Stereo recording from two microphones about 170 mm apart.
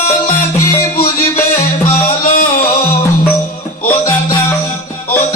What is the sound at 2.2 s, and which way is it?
Music, 55° left (ahead or behind).